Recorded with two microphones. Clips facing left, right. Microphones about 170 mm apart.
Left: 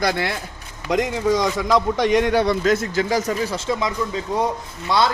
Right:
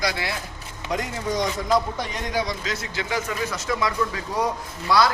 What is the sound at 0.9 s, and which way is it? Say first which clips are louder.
A man's voice: left 8 dB; 90° left.